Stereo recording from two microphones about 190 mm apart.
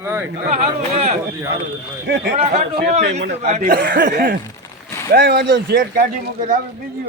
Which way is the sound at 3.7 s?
60° right (ahead or behind).